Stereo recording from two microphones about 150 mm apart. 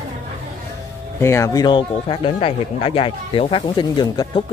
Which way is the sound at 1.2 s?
20° left (ahead or behind).